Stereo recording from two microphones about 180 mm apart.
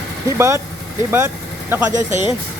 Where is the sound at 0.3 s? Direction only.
15° right (ahead or behind).